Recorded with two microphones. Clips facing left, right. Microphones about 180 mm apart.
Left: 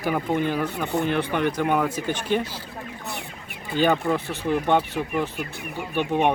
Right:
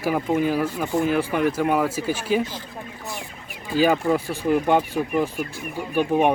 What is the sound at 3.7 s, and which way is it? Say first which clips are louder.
Speech: right 2 dB; 5° right (ahead or behind).